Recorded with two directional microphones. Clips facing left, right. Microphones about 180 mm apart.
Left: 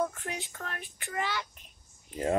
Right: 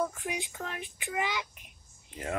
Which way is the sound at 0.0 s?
10° right (ahead or behind).